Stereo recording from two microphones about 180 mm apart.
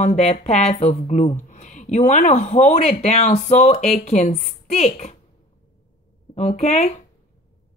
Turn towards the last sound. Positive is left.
turn(degrees=40)  # may be behind; listen again after turning